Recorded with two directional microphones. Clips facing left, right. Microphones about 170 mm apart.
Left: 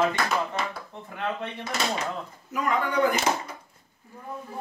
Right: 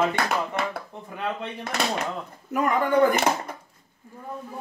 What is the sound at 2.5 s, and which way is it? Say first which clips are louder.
Speech: right 4 dB; 55° right (ahead or behind).